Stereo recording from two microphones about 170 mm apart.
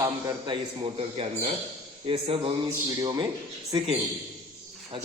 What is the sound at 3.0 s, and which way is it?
Speech, 25° right (ahead or behind).